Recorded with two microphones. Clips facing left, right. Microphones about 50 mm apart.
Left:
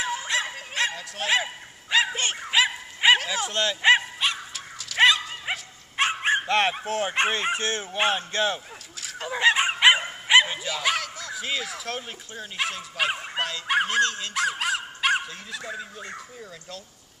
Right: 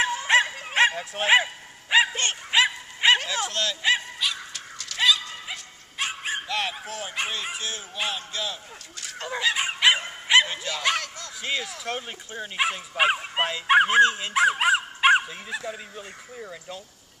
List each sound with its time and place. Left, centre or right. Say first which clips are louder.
0.3 s bow-wow: right 7 dB; right
2.1 s bow-wow: right 1 dB; centre
3.5 s dog: left 6 dB; left
6.2 s speech: left 7 dB; left
9.0 s fowl: left 1 dB; centre
9.4 s bow-wow: left 4 dB; left; by 12.0 s centre
12.4 s speech: right 3 dB; centre
15.6 s speech: even; centre